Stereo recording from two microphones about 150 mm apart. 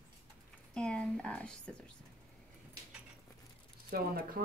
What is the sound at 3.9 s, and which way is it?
Speech, 80° right.